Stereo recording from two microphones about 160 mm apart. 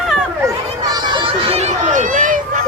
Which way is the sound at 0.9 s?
30° right (ahead or behind).